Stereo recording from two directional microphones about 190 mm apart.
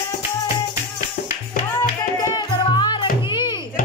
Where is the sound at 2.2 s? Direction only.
20° left (ahead or behind).